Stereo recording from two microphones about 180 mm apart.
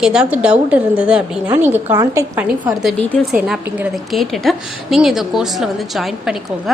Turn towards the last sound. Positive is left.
turn(degrees=0)  # may be behind; listen again after turning